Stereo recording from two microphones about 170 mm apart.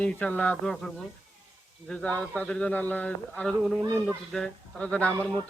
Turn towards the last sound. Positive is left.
turn(degrees=5)  # may be behind; listen again after turning